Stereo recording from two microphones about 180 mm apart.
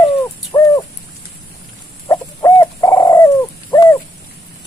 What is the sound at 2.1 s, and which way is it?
Bird, 15° left (ahead or behind).